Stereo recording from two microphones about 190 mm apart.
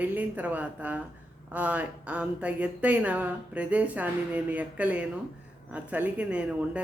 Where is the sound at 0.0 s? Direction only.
10° right (ahead or behind).